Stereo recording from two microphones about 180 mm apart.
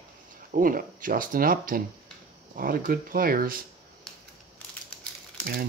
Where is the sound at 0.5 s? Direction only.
50° right (ahead or behind).